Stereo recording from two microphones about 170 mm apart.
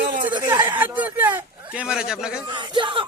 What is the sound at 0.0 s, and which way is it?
Chatter, 55° right (ahead or behind).